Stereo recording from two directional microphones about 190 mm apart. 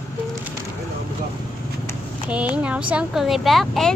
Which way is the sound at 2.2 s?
5° right (ahead or behind).